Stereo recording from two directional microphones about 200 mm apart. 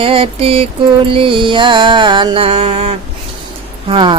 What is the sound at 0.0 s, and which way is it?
Speech, 25° right (ahead or behind).